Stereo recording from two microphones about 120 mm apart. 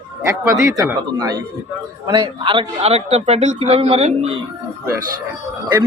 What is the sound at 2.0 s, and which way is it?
Speech, 40° right (ahead or behind).